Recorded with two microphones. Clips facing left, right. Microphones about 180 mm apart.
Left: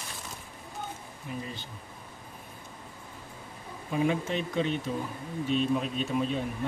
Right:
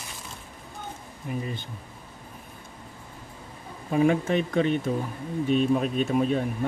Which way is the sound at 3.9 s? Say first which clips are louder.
Right 6 dB; 50° right (ahead or behind).